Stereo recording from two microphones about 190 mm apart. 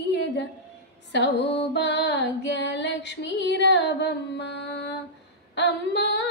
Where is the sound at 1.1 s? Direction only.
65° left (ahead or behind).